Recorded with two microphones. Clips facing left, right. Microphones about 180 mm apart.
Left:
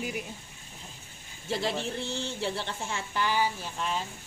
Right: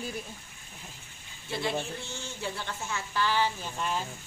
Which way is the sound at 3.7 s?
Centre (ahead or behind).